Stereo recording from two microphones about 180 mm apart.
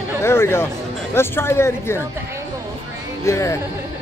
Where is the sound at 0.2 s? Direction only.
15° left (ahead or behind).